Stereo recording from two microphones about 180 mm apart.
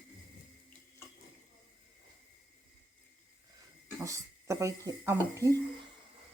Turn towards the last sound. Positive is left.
turn(degrees=-15)  # may be behind; listen again after turning